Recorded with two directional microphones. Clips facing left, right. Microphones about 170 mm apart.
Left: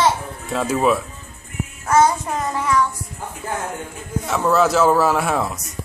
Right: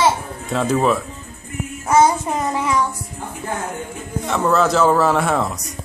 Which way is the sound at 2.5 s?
20° right (ahead or behind).